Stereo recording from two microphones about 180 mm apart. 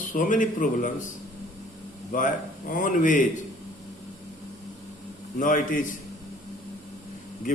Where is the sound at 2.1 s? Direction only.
50° left (ahead or behind).